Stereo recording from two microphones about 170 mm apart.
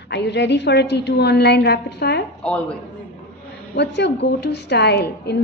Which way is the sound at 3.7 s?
85° left.